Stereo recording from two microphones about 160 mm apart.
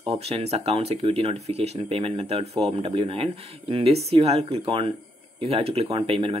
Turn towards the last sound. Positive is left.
turn(degrees=-35)  # may be behind; listen again after turning